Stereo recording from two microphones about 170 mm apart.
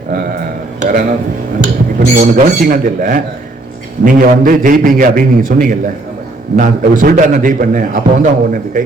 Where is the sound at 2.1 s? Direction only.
55° right (ahead or behind).